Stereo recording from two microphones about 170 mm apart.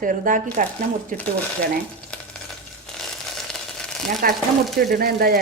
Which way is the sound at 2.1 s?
5° left (ahead or behind).